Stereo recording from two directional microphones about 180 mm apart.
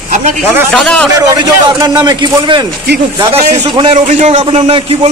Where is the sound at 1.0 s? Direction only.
15° right (ahead or behind).